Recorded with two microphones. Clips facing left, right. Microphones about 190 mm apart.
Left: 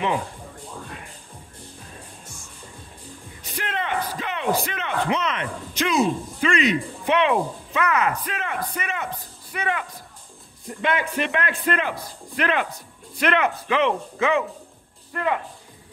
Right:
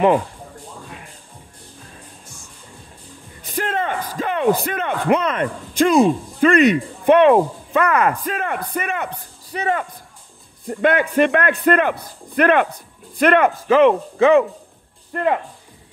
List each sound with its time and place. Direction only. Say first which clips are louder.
3.4 s speech: right 6 dB; 45° right (ahead or behind)
9.5 s speech: right 5 dB; 40° right (ahead or behind)
10.7 s a man's voice: right 7 dB; 55° right (ahead or behind)